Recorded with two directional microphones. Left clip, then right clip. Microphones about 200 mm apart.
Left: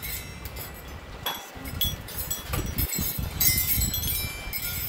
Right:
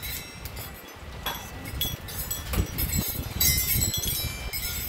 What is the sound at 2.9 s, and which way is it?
Wind chime, 50° left (ahead or behind).